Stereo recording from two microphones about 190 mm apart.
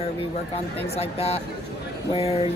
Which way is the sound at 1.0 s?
35° left (ahead or behind).